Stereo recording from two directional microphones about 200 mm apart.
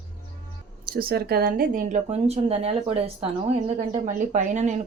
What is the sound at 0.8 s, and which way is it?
Speech, 45° right (ahead or behind).